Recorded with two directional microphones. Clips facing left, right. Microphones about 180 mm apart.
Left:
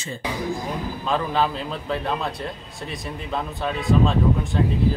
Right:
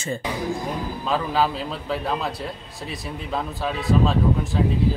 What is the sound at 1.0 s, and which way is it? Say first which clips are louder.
Speech: even; 5° right (ahead or behind).